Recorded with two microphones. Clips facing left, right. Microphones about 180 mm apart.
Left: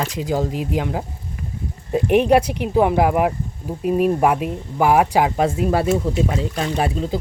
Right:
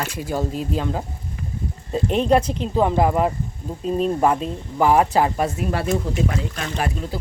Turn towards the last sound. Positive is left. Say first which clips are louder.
# left 5 dB
turn(degrees=30)  # may be behind; listen again after turning